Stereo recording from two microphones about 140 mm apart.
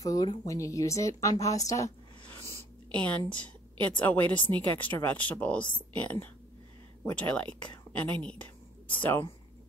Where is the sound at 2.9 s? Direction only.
10° left (ahead or behind).